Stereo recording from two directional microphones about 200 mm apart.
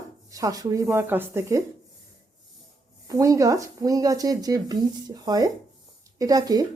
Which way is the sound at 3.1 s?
15° right (ahead or behind).